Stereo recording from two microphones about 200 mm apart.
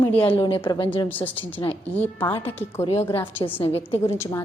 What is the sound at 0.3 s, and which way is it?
A woman's voice, 25° left (ahead or behind).